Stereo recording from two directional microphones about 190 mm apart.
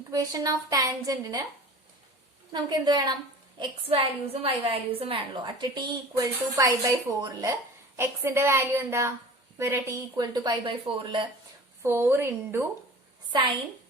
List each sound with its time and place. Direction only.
0.1 s a woman's voice: 20° right (ahead or behind)
2.5 s a woman's voice: 25° right (ahead or behind)
11.8 s a woman's voice: 15° right (ahead or behind)